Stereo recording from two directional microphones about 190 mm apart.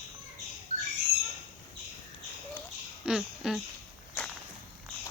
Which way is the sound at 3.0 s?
5° right (ahead or behind).